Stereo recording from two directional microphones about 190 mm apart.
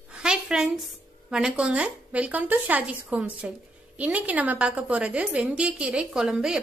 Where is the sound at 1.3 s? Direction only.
5° right (ahead or behind).